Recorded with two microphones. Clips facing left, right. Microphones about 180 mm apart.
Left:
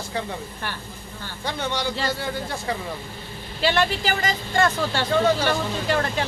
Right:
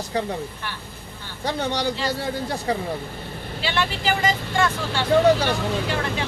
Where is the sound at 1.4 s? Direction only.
35° right (ahead or behind).